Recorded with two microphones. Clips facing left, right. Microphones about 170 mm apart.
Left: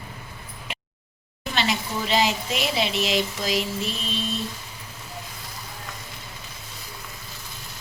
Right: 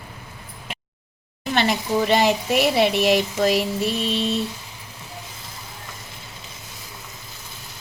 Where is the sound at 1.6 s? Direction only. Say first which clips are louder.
Right 6 dB; 55° right (ahead or behind).